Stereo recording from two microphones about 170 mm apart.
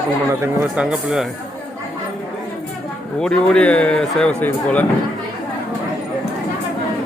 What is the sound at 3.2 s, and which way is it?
A man's voice, 5° left (ahead or behind).